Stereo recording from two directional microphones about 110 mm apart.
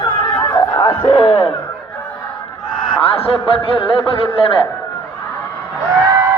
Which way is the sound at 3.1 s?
60° left (ahead or behind).